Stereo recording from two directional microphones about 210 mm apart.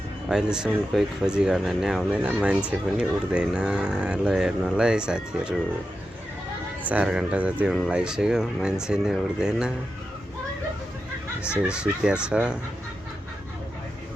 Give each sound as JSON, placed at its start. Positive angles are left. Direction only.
{"t": 0.5, "sound": "speech", "side_deg": -5}
{"t": 6.8, "sound": "speech", "side_deg": -5}
{"t": 11.7, "sound": "speech", "side_deg": -5}